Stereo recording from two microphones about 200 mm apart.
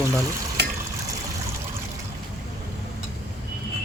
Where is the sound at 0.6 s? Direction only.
55° right (ahead or behind).